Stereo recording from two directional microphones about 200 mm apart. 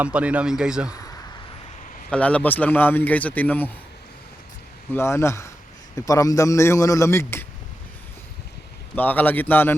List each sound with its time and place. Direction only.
0.0 s speech: 5° right (ahead or behind)
2.0 s speech: 5° left (ahead or behind)
4.9 s speech: 15° left (ahead or behind)
9.0 s speech: 10° left (ahead or behind)